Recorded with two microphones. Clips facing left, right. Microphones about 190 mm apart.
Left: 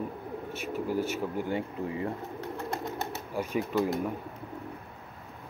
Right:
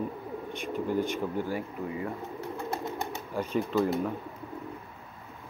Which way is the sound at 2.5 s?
10° right (ahead or behind).